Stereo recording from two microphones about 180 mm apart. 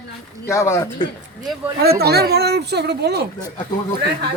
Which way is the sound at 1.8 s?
60° right (ahead or behind).